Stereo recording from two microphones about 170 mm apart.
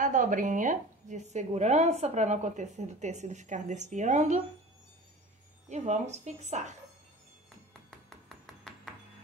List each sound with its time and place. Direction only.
0.0 s a woman's voice: 50° right (ahead or behind)
5.7 s a woman's voice: 45° right (ahead or behind)